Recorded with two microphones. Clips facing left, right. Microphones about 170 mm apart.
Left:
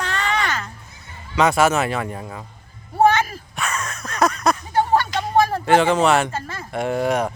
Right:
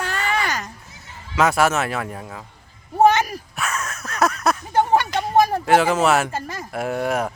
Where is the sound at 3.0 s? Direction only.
15° right (ahead or behind).